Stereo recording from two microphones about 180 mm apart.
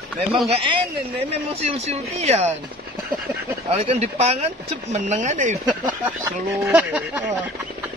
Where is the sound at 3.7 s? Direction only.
35° right (ahead or behind).